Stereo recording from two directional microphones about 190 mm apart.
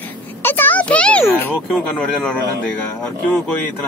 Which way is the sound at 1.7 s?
Centre (ahead or behind).